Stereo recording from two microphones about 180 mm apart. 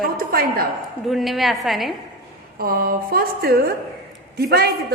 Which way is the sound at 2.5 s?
55° right (ahead or behind).